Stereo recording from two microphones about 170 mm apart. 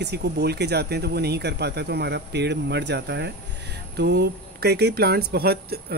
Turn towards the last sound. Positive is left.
turn(degrees=-65)  # may be behind; listen again after turning